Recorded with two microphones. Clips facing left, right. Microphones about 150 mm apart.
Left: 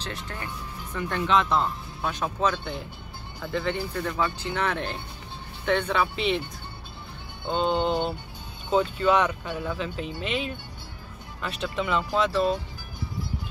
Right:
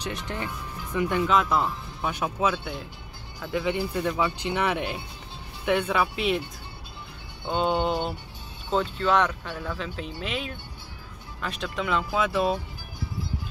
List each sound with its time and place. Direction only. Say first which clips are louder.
0.0 s speech: right 3 dB; 20° right (ahead or behind); by 6.4 s 5° right (ahead or behind)
7.4 s speech: even; 5° right (ahead or behind)